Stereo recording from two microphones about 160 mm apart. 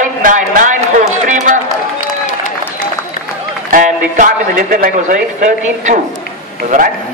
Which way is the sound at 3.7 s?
55° right (ahead or behind).